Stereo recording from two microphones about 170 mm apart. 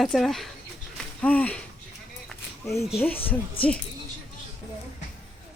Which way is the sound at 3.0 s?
10° left (ahead or behind).